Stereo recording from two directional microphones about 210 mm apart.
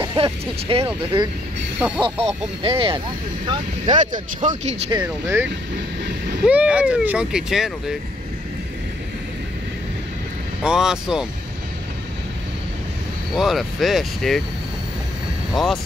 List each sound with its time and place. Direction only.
0.0 s speech: 25° right (ahead or behind)
2.0 s speech: 20° right (ahead or behind)
3.9 s speech: 35° right (ahead or behind)
4.9 s speech: 10° right (ahead or behind)
10.6 s speech: 5° right (ahead or behind)
13.3 s speech: centre (ahead or behind)
15.5 s speech: centre (ahead or behind)